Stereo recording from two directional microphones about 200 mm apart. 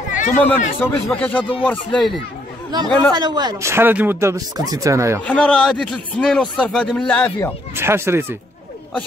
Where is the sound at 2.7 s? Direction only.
20° right (ahead or behind).